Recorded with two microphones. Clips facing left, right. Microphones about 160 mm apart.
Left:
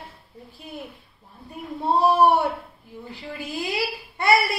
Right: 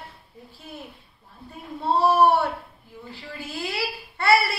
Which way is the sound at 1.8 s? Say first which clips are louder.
Left 1 dB; 15° left (ahead or behind).